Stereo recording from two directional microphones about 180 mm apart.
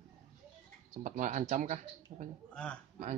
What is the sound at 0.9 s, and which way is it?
Speech, 45° right (ahead or behind).